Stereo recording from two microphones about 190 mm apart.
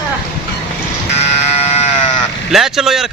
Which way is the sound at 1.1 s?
35° left (ahead or behind).